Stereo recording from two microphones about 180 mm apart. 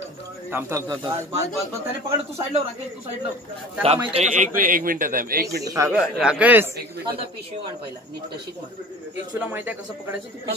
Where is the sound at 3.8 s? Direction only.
35° right (ahead or behind); by 5.4 s 55° right (ahead or behind).